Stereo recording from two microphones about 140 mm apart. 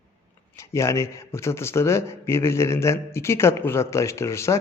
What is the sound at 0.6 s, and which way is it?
Speech, 20° left (ahead or behind).